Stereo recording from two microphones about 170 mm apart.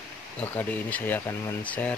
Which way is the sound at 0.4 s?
10° left (ahead or behind).